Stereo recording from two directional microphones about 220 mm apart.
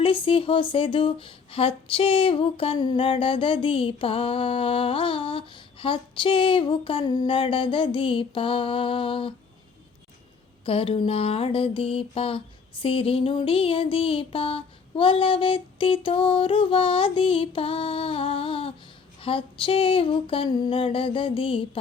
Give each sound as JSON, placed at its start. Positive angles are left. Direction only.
{"t": 0.0, "sound": "speech", "side_deg": 25}
{"t": 10.7, "sound": "speech", "side_deg": 25}